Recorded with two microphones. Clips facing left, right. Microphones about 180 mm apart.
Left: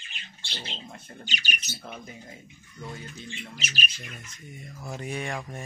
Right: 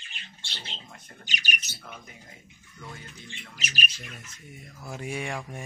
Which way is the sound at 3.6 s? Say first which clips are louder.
Right 4 dB; 5° right (ahead or behind).